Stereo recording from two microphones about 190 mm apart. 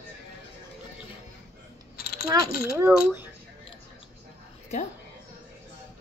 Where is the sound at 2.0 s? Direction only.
55° left (ahead or behind).